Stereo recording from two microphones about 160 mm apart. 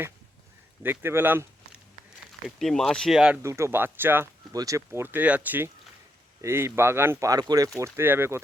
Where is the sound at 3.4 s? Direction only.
15° right (ahead or behind).